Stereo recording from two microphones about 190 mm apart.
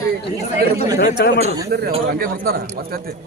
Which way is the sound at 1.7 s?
60° right (ahead or behind).